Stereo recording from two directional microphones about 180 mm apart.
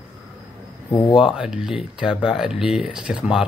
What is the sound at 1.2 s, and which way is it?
Speech, 5° right (ahead or behind).